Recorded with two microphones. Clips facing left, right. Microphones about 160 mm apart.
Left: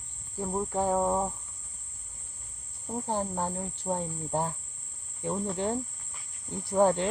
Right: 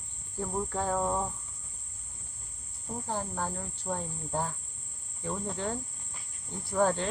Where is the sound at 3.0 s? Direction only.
25° left (ahead or behind).